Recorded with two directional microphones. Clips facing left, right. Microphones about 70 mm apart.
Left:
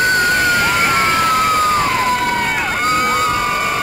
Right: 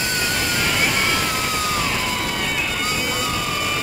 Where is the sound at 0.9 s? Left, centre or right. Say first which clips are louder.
Left 8 dB; left.